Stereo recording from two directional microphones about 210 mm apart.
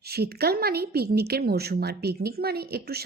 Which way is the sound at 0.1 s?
50° right (ahead or behind).